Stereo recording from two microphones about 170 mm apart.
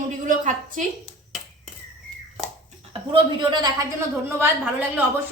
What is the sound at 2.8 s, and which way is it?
Speech, 30° right (ahead or behind).